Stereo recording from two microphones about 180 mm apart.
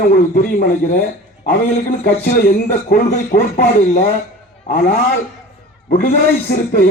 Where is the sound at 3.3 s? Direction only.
50° left (ahead or behind).